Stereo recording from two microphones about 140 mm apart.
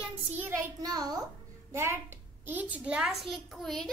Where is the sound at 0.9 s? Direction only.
30° right (ahead or behind).